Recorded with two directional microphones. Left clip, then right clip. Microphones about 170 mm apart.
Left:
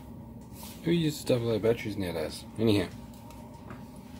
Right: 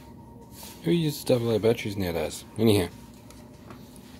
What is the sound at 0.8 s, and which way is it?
Speech, 30° right (ahead or behind).